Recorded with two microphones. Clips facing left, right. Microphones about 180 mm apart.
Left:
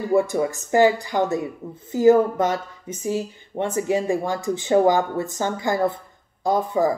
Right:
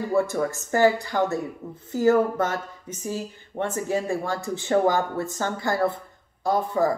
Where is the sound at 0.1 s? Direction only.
15° left (ahead or behind).